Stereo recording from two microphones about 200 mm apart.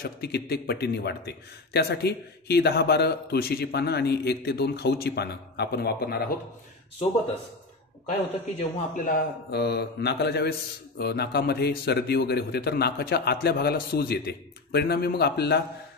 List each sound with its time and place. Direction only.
0.0 s a man's voice: 55° left (ahead or behind)
8.1 s a man's voice: 35° left (ahead or behind); by 15.6 s 55° left (ahead or behind)